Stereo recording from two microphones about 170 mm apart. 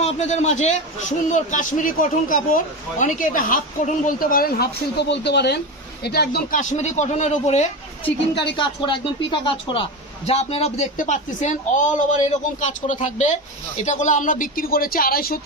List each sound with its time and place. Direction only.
0.0 s speech: 45° left (ahead or behind); by 5.5 s 85° left
6.0 s speech: 70° left (ahead or behind)
6.6 s speech: 45° left (ahead or behind)
8.5 s speech: 30° left (ahead or behind); by 15.4 s 60° left (ahead or behind)